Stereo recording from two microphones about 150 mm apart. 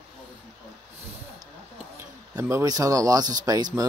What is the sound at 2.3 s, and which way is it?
Speech, 25° right (ahead or behind).